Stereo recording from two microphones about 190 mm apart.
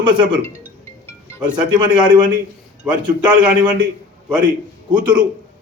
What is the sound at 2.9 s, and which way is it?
Speech, 5° right (ahead or behind).